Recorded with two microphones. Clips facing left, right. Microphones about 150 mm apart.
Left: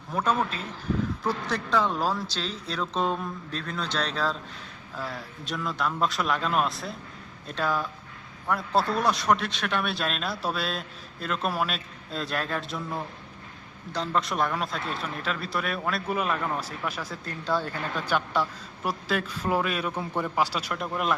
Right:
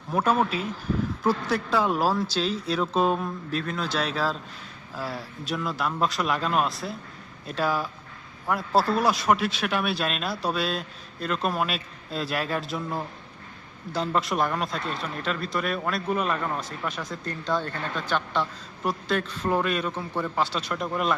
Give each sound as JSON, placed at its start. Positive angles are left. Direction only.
{"t": 0.1, "sound": "speech", "side_deg": -10}
{"t": 19.9, "sound": "a man's voice", "side_deg": 15}